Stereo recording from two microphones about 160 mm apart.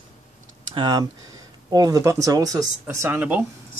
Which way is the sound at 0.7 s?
30° right (ahead or behind).